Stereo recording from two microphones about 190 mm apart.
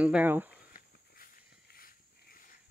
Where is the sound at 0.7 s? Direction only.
50° left (ahead or behind).